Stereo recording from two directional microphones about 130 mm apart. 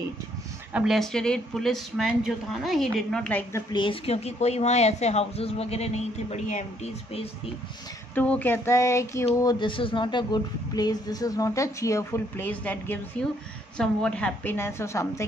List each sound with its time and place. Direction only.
0.7 s speech: centre (ahead or behind)
3.7 s speech: 40° left (ahead or behind)
8.1 s a sound: 15° left (ahead or behind)
13.7 s a woman's voice: 5° left (ahead or behind)